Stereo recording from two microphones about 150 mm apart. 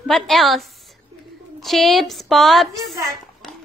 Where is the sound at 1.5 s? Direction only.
Centre (ahead or behind).